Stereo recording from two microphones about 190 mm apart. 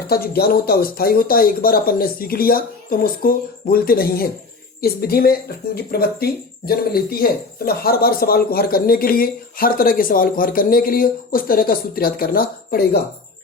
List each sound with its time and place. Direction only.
0.1 s speech: 55° left (ahead or behind)